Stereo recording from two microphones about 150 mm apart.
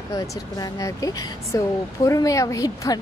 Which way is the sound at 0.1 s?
20° left (ahead or behind).